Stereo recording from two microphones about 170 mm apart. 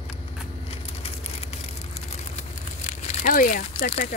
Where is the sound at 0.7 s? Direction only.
35° left (ahead or behind); by 3.9 s 55° left (ahead or behind).